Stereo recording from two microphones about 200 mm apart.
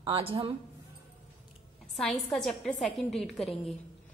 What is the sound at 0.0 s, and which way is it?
Speech, 30° right (ahead or behind).